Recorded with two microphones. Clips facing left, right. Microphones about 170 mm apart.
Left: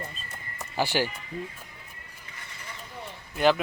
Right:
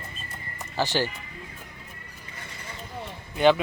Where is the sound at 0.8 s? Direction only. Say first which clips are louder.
Right 1 dB; 10° left (ahead or behind).